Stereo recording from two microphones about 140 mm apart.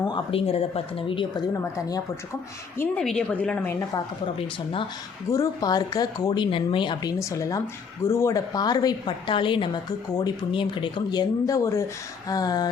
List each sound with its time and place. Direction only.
0.0 s speech: 35° left (ahead or behind)
3.0 s a woman's voice: 5° left (ahead or behind)
4.4 s speech: 40° left (ahead or behind)
5.3 s a woman's voice: 25° left (ahead or behind)